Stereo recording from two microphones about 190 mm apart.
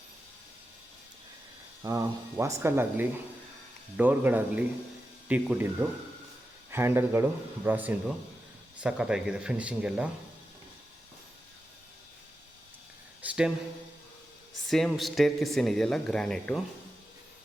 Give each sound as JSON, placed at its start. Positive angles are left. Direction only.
{"t": 1.8, "sound": "speech", "side_deg": -15}
{"t": 13.2, "sound": "a sound", "side_deg": -5}
{"t": 14.7, "sound": "speech", "side_deg": 0}